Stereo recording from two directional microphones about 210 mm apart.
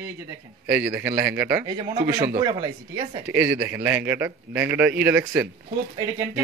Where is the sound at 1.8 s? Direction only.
20° right (ahead or behind).